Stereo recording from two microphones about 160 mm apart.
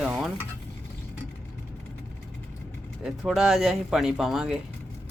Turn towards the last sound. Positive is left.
turn(degrees=0)  # may be behind; listen again after turning